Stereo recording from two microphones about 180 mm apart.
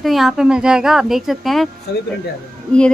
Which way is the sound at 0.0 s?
Centre (ahead or behind).